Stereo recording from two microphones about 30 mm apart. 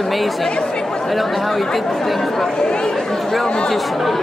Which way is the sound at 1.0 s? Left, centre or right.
Centre.